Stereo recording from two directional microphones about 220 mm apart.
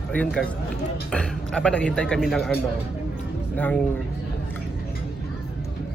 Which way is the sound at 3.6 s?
5° left (ahead or behind).